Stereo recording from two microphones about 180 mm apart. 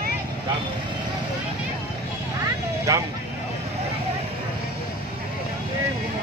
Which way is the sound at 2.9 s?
20° right (ahead or behind).